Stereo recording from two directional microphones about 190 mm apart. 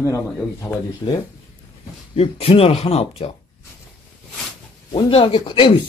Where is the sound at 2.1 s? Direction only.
30° left (ahead or behind).